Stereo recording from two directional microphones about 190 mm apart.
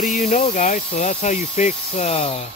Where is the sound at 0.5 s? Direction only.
35° left (ahead or behind).